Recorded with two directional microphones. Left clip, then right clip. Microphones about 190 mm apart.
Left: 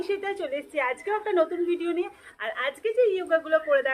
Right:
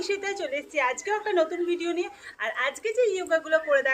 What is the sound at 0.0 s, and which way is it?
A woman's voice, 15° left (ahead or behind).